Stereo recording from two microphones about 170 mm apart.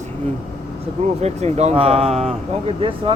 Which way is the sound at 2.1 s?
Centre (ahead or behind).